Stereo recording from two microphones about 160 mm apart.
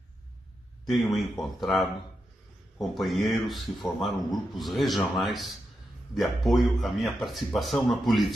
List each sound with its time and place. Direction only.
0.8 s speech: centre (ahead or behind)